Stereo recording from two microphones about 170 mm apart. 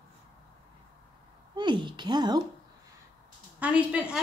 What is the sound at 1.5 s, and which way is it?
Speech, 25° right (ahead or behind).